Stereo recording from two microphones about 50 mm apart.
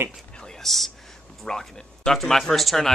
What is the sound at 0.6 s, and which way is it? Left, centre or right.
Speech, centre.